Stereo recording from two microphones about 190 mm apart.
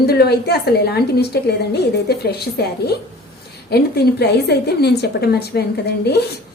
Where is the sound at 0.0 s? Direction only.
55° left (ahead or behind).